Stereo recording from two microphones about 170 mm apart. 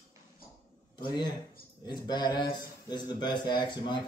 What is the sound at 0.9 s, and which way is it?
Speech, 25° left (ahead or behind).